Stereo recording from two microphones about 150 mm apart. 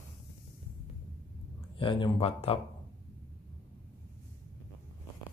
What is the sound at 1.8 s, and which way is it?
Speech, 35° left (ahead or behind).